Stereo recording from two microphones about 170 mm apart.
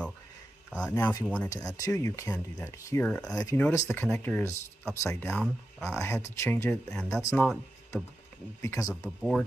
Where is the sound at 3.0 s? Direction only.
5° left (ahead or behind).